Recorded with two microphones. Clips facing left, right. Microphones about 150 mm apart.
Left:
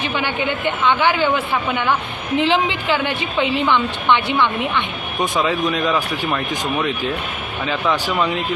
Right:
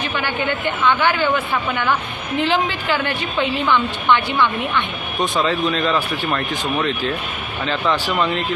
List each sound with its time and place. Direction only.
0.9 s a woman's voice: 20° left (ahead or behind)
1.7 s speech: 5° left (ahead or behind)
2.4 s a woman's voice: 20° left (ahead or behind)
5.8 s speech: centre (ahead or behind)